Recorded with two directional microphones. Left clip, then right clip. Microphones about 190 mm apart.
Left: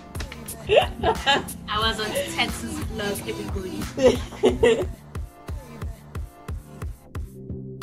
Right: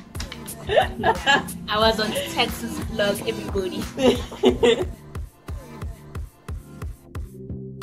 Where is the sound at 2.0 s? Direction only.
Centre (ahead or behind).